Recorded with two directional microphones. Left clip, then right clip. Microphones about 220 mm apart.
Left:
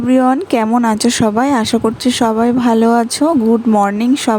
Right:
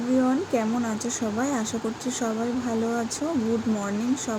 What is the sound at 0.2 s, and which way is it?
Speech, 45° left (ahead or behind).